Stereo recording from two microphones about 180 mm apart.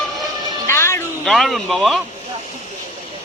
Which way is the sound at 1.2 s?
Centre (ahead or behind).